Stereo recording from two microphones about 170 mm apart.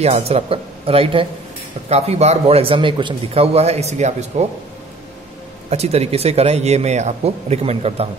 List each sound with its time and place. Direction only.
0.0 s a man's voice: 35° right (ahead or behind)
5.7 s a man's voice: 40° right (ahead or behind)